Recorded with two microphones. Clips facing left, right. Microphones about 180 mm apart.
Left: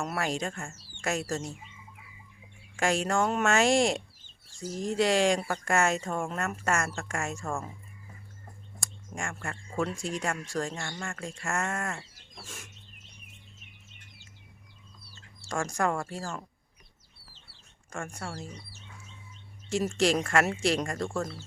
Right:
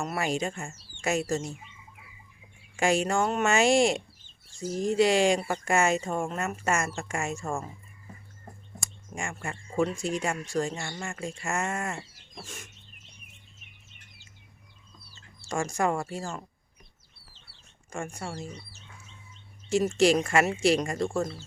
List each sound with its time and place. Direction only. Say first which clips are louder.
0.0 s speech: right 2 dB; centre (ahead or behind)
2.7 s speech: right 2 dB; 5° right (ahead or behind)
8.8 s speech: right 1 dB; 5° right (ahead or behind)
15.4 s speech: right 2 dB; 5° right (ahead or behind)
18.1 s speech: right 2 dB; 5° right (ahead or behind)
19.7 s speech: right 4 dB; centre (ahead or behind)